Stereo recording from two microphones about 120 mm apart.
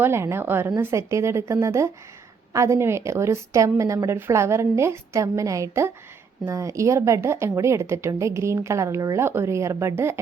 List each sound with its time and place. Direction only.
0.0 s speech: 20° right (ahead or behind)